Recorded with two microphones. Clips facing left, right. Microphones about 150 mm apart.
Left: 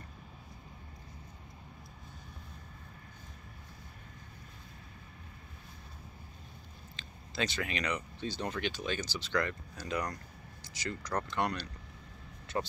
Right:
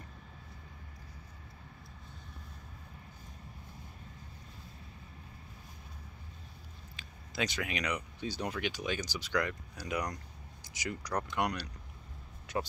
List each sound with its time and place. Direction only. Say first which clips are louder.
7.0 s speech: even; 10° right (ahead or behind)